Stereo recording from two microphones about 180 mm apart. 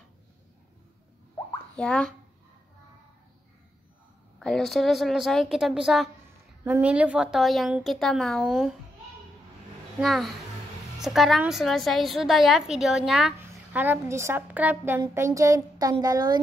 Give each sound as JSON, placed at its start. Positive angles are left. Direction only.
{"t": 1.8, "sound": "a woman's voice", "side_deg": 5}
{"t": 4.4, "sound": "a woman's voice", "side_deg": 5}
{"t": 9.9, "sound": "a woman's voice", "side_deg": 0}
{"t": 13.4, "sound": "a woman's voice", "side_deg": -10}